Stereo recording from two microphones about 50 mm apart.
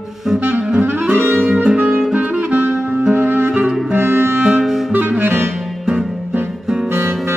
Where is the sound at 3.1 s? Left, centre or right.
Right.